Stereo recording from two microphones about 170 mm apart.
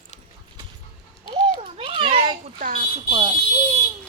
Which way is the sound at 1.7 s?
35° right (ahead or behind).